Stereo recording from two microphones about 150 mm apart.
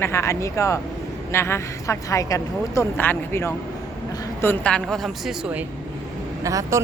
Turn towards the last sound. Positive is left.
turn(degrees=-20)  # may be behind; listen again after turning